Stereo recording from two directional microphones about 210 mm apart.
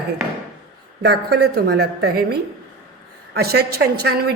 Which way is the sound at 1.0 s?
50° right (ahead or behind).